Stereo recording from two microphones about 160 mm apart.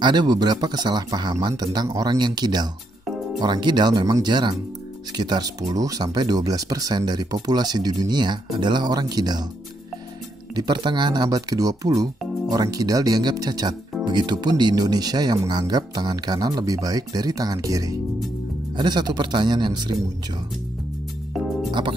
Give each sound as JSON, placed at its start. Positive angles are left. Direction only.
{"t": 0.0, "sound": "speech", "side_deg": -25}
{"t": 10.5, "sound": "speech", "side_deg": -25}
{"t": 21.6, "sound": "speech", "side_deg": -30}